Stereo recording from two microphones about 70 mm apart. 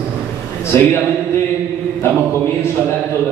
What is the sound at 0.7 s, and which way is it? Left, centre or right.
Speech, left.